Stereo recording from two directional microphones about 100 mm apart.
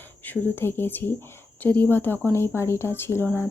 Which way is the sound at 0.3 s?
20° left (ahead or behind).